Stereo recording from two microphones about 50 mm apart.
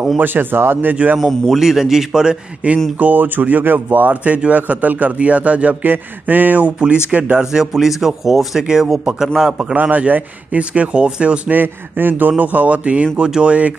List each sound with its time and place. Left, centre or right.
0.2 s speech: right
1.1 s a man's voice: centre
2.6 s speech: right
6.8 s speech: right
7.5 s a man's voice: centre
9.8 s speech: right
11.5 s speech: right